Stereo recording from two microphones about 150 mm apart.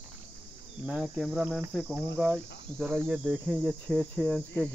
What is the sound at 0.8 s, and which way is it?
Cricket, 5° right (ahead or behind).